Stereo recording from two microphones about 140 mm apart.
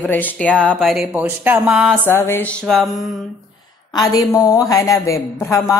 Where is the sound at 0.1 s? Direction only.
10° left (ahead or behind).